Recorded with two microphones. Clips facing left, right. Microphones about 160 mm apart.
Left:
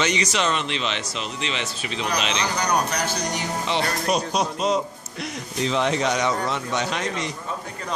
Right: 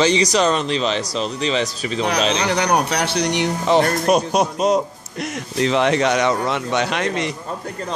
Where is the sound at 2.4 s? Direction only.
65° right (ahead or behind).